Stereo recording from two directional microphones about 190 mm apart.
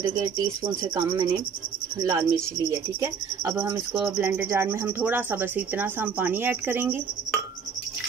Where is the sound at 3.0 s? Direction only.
15° right (ahead or behind).